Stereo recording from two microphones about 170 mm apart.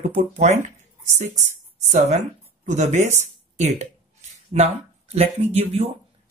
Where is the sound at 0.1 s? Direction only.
40° right (ahead or behind).